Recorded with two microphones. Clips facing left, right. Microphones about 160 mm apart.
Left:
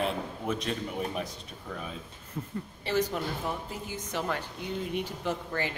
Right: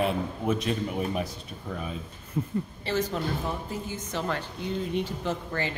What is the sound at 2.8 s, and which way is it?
A woman's voice, 10° left (ahead or behind).